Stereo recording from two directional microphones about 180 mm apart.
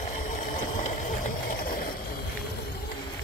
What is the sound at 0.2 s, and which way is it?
Engine, 45° left (ahead or behind).